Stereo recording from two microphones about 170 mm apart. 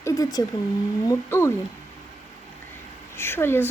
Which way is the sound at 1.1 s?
15° left (ahead or behind).